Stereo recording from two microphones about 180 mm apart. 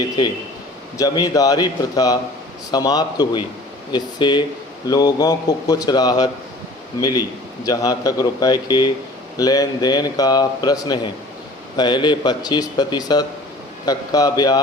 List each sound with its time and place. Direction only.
0.9 s a man's voice: 20° left (ahead or behind)